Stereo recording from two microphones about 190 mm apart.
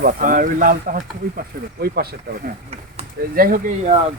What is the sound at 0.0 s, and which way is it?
Speech, 45° right (ahead or behind).